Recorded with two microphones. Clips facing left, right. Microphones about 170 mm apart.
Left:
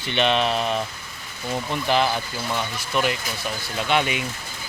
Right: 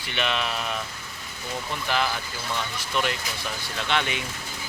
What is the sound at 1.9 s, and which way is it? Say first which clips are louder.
Speech: left 6 dB; 20° left (ahead or behind).